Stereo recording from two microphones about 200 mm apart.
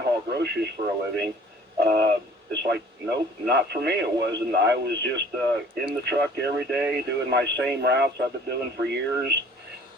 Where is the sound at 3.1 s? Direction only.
55° right (ahead or behind).